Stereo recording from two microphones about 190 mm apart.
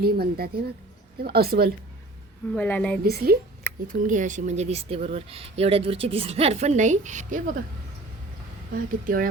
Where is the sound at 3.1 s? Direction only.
55° right (ahead or behind).